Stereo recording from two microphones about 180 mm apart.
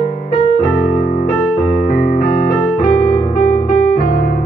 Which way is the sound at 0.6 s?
55° left (ahead or behind).